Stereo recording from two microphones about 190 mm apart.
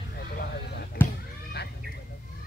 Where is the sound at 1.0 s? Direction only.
10° left (ahead or behind).